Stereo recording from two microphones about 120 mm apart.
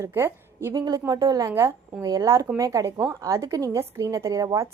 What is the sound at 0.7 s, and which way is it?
A woman's voice, 30° right (ahead or behind).